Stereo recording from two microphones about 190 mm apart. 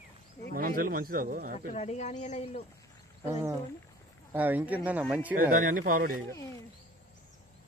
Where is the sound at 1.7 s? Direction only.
35° left (ahead or behind).